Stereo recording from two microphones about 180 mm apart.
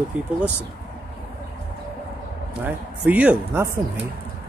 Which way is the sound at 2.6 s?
10° right (ahead or behind).